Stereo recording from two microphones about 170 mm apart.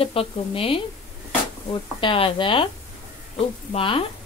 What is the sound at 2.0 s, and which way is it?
Speech, 30° left (ahead or behind).